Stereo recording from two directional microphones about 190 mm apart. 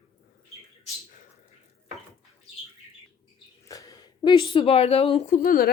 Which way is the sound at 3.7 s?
20° left (ahead or behind).